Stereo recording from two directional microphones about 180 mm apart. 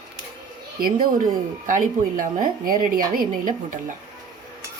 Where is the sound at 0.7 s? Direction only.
55° right (ahead or behind).